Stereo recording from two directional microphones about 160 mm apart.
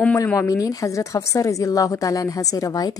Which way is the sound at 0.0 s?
15° left (ahead or behind).